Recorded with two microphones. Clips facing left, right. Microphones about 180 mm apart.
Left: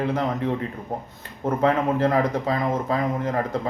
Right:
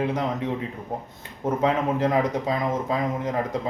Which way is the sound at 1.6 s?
20° right (ahead or behind).